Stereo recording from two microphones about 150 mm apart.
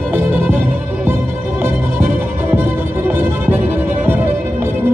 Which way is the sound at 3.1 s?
15° right (ahead or behind).